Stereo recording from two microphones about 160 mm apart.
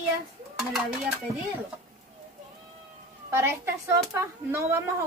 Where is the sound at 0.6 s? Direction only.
5° right (ahead or behind).